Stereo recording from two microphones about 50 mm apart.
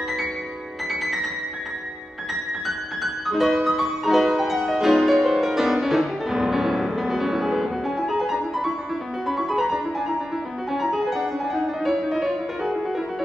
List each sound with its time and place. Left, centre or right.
2.6 s music: centre